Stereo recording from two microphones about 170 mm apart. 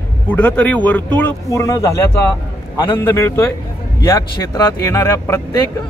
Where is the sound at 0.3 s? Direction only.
10° left (ahead or behind).